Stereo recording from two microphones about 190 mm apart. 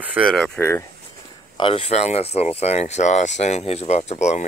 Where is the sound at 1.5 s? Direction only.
25° left (ahead or behind).